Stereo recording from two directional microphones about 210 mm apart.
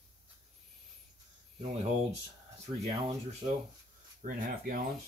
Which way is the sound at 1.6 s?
30° right (ahead or behind).